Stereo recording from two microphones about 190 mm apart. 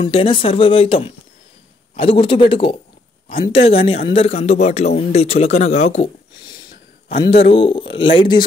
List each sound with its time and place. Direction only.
0.0 s a man's voice: 30° left (ahead or behind)
7.2 s a man's voice: 30° left (ahead or behind)